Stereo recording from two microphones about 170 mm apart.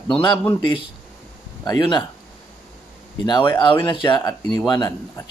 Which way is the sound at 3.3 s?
30° left (ahead or behind).